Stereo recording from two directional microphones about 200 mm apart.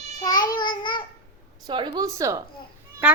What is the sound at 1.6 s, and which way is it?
Speech, 25° right (ahead or behind).